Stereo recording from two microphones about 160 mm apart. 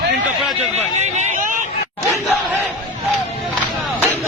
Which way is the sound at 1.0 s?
45° right (ahead or behind).